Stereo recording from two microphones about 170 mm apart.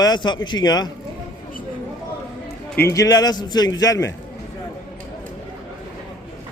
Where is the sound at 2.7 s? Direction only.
15° left (ahead or behind).